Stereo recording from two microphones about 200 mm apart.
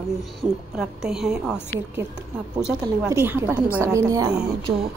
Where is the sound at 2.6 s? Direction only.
10° right (ahead or behind).